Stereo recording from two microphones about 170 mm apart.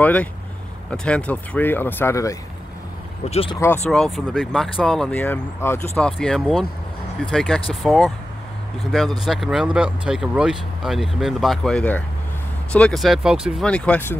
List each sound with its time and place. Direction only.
0.0 s speech: 10° left (ahead or behind)
3.3 s speech: 35° left (ahead or behind)
3.5 s speech: 15° left (ahead or behind)
3.9 s speech: centre (ahead or behind)